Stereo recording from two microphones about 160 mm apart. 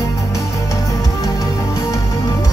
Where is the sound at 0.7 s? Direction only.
20° left (ahead or behind).